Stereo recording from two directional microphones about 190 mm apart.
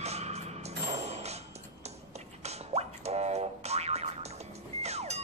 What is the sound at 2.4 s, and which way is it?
Music, 35° right (ahead or behind).